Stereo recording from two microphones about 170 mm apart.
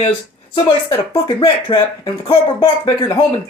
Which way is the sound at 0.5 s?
30° left (ahead or behind).